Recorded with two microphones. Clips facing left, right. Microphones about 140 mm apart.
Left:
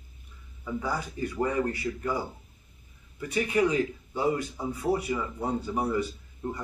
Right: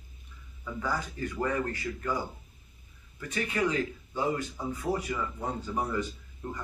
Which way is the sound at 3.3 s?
15° left (ahead or behind).